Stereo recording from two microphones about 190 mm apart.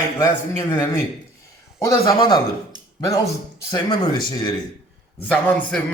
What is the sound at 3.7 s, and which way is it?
Speech, 20° left (ahead or behind).